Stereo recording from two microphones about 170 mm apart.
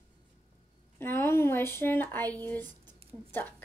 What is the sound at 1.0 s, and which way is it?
Speech, 15° left (ahead or behind).